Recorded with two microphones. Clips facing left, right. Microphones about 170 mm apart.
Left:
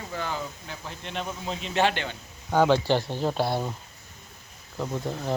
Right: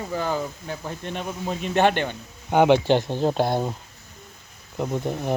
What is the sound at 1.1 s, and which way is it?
Speech, 50° right (ahead or behind).